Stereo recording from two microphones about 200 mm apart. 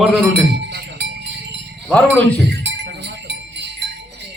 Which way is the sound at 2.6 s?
60° right (ahead or behind).